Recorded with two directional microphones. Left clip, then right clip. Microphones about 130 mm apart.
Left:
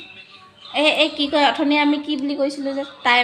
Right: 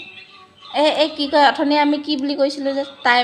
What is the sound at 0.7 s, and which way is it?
A woman's voice, 30° right (ahead or behind).